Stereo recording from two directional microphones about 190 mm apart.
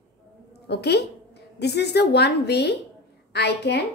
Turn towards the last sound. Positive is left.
turn(degrees=60)  # may be behind; listen again after turning